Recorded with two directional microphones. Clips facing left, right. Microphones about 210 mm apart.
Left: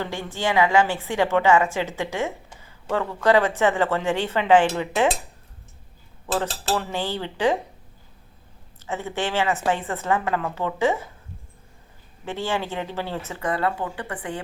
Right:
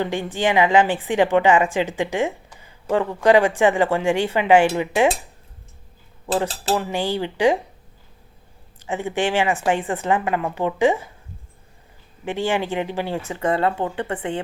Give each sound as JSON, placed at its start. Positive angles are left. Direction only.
{"t": 0.0, "sound": "speech", "side_deg": -15}
{"t": 6.3, "sound": "speech", "side_deg": -15}
{"t": 8.8, "sound": "speech", "side_deg": -15}
{"t": 12.2, "sound": "speech", "side_deg": -15}
{"t": 13.4, "sound": "speech", "side_deg": -25}